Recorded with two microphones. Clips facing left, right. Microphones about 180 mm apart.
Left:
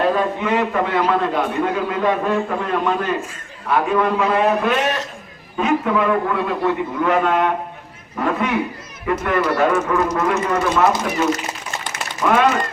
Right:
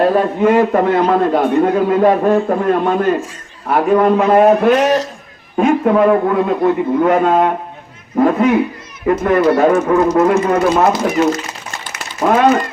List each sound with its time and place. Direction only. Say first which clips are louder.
0.0 s a man's voice: right 6 dB; 40° right (ahead or behind)